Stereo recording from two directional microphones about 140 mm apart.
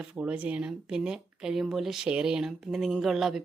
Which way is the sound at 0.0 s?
10° right (ahead or behind).